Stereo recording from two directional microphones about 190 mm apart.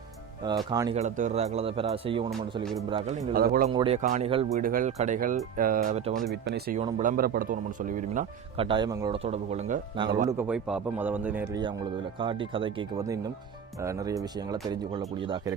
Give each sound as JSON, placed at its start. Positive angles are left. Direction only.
{"t": 0.4, "sound": "speech", "side_deg": -20}
{"t": 0.9, "sound": "speech", "side_deg": -40}
{"t": 3.3, "sound": "speech", "side_deg": -50}
{"t": 3.7, "sound": "speech", "side_deg": -30}
{"t": 4.6, "sound": "speech", "side_deg": -45}
{"t": 6.1, "sound": "speech", "side_deg": -60}
{"t": 7.0, "sound": "speech", "side_deg": -45}
{"t": 8.5, "sound": "speech", "side_deg": -25}
{"t": 9.1, "sound": "speech", "side_deg": -30}
{"t": 10.2, "sound": "speech", "side_deg": -10}
{"t": 12.2, "sound": "speech", "side_deg": -25}